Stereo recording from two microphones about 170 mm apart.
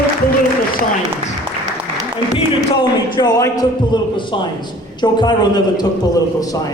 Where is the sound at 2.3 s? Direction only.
30° left (ahead or behind).